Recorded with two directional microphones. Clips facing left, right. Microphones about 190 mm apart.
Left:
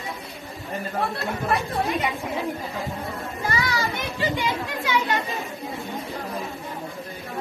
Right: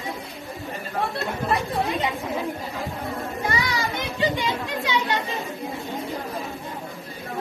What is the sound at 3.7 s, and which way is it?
Children playing, 20° right (ahead or behind).